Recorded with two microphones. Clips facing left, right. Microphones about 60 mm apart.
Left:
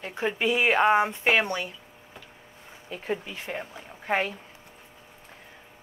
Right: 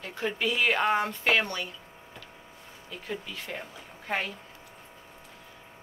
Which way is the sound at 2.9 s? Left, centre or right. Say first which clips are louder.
Left 5 dB; left.